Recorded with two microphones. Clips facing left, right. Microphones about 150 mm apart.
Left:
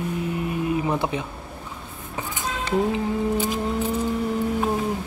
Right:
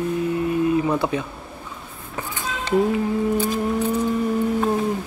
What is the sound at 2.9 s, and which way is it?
Music, 20° left (ahead or behind).